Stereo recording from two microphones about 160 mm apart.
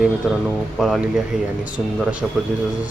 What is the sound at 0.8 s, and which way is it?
Speech, centre (ahead or behind).